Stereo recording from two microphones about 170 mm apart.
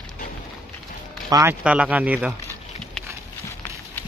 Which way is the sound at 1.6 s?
5° right (ahead or behind).